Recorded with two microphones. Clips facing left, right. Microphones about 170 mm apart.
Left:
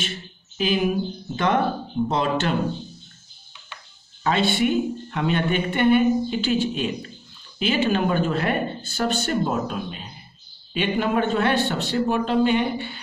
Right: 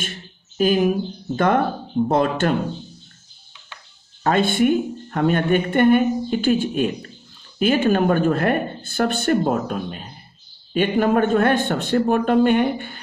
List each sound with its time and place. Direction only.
0.6 s speech: 45° right (ahead or behind)
4.2 s speech: 50° right (ahead or behind)